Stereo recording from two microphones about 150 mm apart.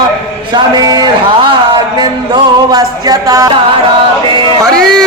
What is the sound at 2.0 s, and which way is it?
Music, 25° right (ahead or behind).